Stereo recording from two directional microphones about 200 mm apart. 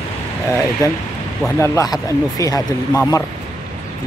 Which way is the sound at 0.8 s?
15° left (ahead or behind).